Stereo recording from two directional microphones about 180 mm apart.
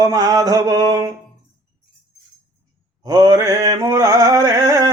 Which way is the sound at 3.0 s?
20° right (ahead or behind).